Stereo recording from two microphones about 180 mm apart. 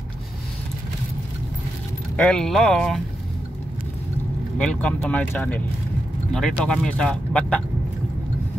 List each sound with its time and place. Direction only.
2.1 s speech: 5° left (ahead or behind)
4.6 s speech: 5° left (ahead or behind)